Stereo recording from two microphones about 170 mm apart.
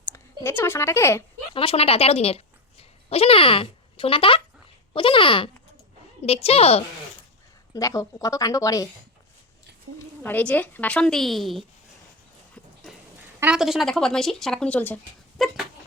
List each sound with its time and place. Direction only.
0.1 s a woman's voice: 15° left (ahead or behind)
1.5 s a woman's voice: 35° left (ahead or behind)
7.7 s a woman's voice: 20° left (ahead or behind)
10.2 s speech: 10° left (ahead or behind)
13.4 s speech: 5° right (ahead or behind)